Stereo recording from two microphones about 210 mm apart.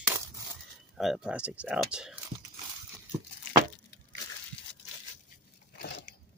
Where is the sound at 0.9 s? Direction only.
Centre (ahead or behind).